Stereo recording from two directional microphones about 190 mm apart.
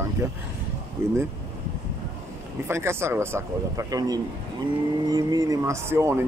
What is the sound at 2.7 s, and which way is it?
Speech, 15° right (ahead or behind).